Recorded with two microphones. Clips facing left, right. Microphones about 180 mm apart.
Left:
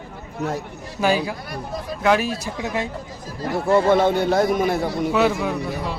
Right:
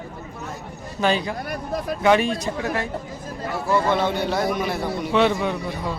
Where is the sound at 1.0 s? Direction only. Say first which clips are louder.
Left 1 dB; 5° left (ahead or behind).